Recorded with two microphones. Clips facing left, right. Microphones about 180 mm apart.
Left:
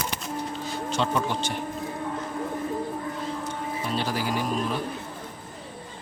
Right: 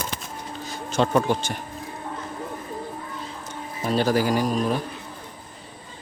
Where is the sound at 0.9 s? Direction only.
45° right (ahead or behind).